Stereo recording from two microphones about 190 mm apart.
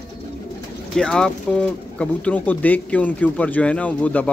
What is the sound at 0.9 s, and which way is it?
Speech, 5° left (ahead or behind).